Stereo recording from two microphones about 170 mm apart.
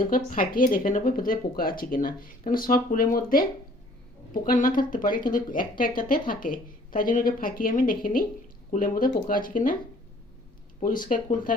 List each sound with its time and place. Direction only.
0.1 s speech: 55° left (ahead or behind)
4.4 s speech: 55° left (ahead or behind)
10.8 s speech: 55° left (ahead or behind)